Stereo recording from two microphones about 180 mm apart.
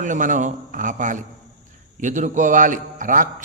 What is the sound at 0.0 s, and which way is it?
A man's voice, 45° right (ahead or behind).